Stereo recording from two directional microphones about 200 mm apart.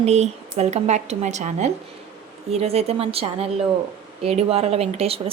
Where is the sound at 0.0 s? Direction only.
30° right (ahead or behind).